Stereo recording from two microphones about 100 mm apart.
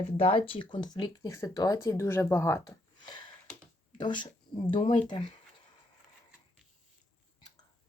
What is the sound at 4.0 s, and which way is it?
Speech, 50° left (ahead or behind).